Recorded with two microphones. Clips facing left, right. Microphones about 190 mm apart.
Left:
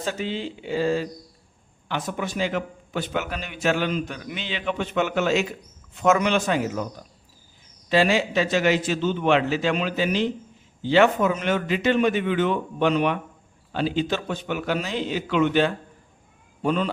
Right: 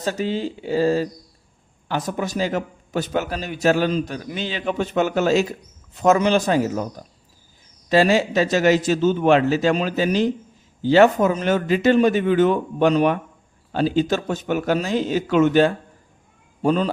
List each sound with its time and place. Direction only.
0.0 s a man's voice: 40° right (ahead or behind)
7.9 s a man's voice: 40° right (ahead or behind)